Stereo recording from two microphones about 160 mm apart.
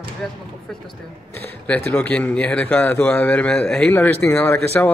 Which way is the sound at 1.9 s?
10° left (ahead or behind).